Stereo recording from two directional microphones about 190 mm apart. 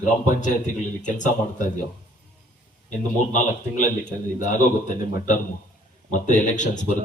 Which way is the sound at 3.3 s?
40° left (ahead or behind).